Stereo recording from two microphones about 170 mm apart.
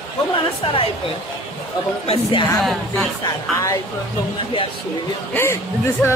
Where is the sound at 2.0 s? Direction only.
30° left (ahead or behind).